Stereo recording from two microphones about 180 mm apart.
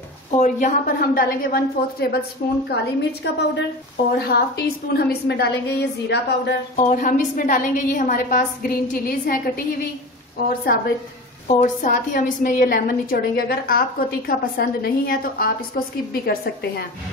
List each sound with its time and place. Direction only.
0.3 s a woman's voice: 45° left (ahead or behind)
2.7 s a woman's voice: 70° left (ahead or behind)
4.1 s a woman's voice: 60° left (ahead or behind)
6.8 s a woman's voice: 45° left (ahead or behind)
11.4 s a woman's voice: 45° left (ahead or behind); by 16.8 s 60° left (ahead or behind)